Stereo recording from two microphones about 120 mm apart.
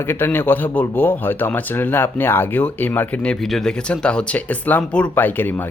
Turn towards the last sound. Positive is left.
turn(degrees=15)  # may be behind; listen again after turning